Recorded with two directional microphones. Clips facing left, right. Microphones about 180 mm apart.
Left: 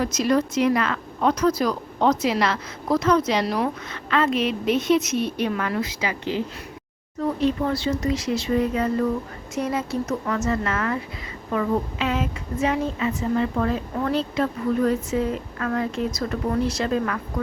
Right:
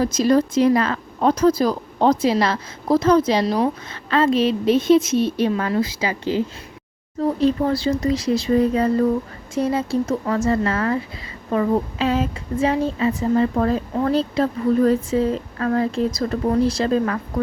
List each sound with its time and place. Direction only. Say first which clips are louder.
0.0 s speech: right 4 dB; 35° right (ahead or behind)